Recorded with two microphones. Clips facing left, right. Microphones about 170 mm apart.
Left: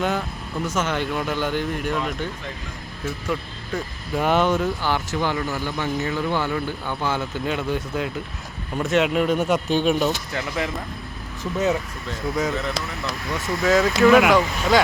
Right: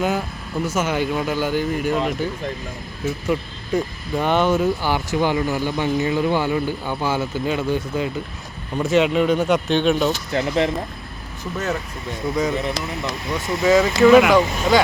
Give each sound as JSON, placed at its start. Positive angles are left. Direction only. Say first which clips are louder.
{"t": 0.0, "sound": "speech", "louder": "right 2 dB", "side_deg": -5}
{"t": 3.2, "sound": "speech", "louder": "right 5 dB", "side_deg": -15}
{"t": 4.1, "sound": "speech", "louder": "right 1 dB", "side_deg": 0}
{"t": 10.3, "sound": "speech", "louder": "right 7 dB", "side_deg": -30}
{"t": 12.2, "sound": "speech", "louder": "right 3 dB", "side_deg": 0}
{"t": 12.5, "sound": "speech", "louder": "right 3 dB", "side_deg": -20}
{"t": 13.6, "sound": "speech", "louder": "right 3 dB", "side_deg": 0}